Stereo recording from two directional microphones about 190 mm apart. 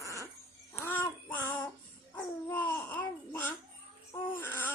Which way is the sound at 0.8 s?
10° left (ahead or behind).